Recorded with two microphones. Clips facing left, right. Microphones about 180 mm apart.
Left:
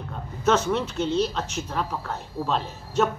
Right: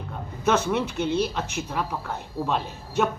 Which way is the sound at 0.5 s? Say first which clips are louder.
Left 1 dB; 15° right (ahead or behind).